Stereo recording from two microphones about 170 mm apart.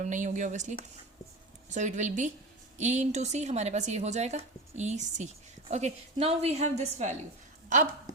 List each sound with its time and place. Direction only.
0.0 s a woman's voice: 50° right (ahead or behind)